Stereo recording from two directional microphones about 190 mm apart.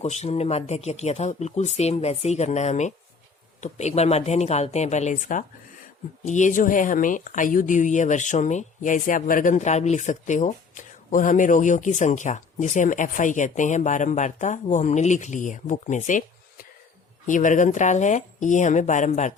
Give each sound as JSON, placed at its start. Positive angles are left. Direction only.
{"t": 0.0, "sound": "speech", "side_deg": 35}